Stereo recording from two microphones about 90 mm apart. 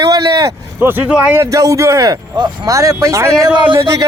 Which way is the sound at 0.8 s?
20° right (ahead or behind).